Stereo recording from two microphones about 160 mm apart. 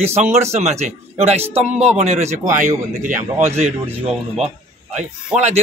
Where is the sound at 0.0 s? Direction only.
45° right (ahead or behind).